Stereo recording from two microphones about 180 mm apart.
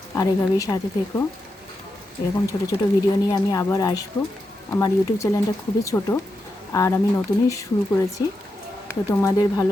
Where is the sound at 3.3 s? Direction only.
20° left (ahead or behind).